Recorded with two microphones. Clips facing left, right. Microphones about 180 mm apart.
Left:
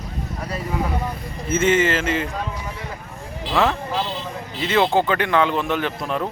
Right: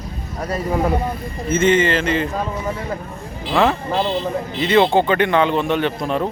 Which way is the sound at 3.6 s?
5° left (ahead or behind).